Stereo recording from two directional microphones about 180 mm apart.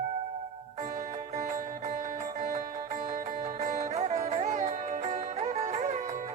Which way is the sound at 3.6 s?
40° right (ahead or behind).